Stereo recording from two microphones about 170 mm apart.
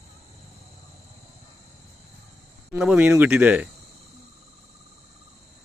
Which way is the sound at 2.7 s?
5° right (ahead or behind).